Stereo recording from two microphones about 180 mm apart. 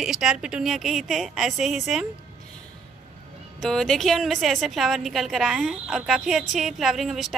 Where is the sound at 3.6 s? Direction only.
5° left (ahead or behind).